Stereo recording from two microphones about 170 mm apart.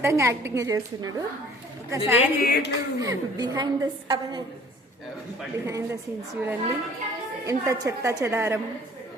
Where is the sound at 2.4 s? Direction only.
70° left (ahead or behind).